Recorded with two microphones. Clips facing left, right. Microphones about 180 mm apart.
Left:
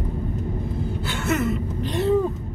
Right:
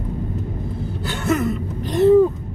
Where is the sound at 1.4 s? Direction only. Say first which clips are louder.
Right 1 dB; 40° right (ahead or behind).